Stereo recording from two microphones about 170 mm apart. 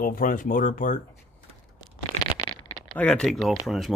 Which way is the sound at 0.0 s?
55° left (ahead or behind).